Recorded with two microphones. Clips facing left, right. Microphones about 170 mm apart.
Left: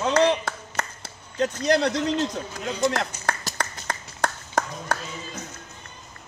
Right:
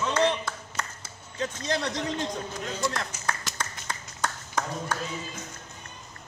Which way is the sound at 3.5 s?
35° left (ahead or behind).